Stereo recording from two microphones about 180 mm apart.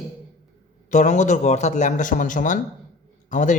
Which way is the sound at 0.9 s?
40° left (ahead or behind).